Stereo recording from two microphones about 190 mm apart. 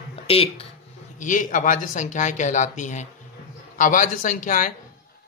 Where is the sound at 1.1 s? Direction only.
45° left (ahead or behind).